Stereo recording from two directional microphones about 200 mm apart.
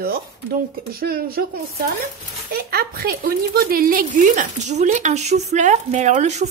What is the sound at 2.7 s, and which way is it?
A woman's voice, 50° right (ahead or behind).